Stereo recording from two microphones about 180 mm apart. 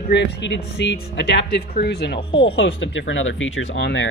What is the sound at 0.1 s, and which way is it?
Speech, 80° left.